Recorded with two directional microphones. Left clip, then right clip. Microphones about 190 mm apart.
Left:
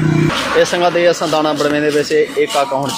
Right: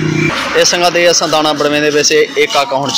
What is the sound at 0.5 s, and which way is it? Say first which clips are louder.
Speech: right 3 dB; centre (ahead or behind).